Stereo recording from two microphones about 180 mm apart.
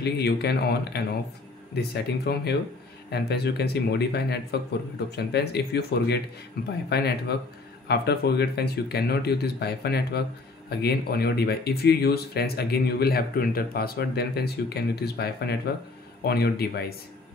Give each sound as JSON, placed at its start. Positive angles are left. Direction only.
{"t": 0.0, "sound": "speech", "side_deg": 65}